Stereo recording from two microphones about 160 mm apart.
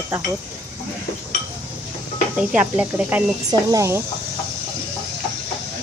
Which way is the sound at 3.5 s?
20° right (ahead or behind).